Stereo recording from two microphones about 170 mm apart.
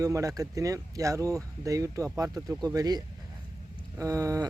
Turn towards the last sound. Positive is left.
turn(degrees=-20)  # may be behind; listen again after turning